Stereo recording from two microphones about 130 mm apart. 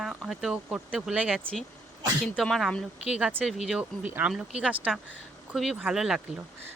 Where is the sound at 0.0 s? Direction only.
Centre (ahead or behind).